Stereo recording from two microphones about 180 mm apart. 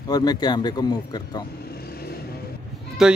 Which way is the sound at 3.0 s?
5° right (ahead or behind).